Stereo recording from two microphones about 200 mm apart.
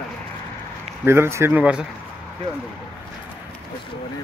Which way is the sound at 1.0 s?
10° right (ahead or behind).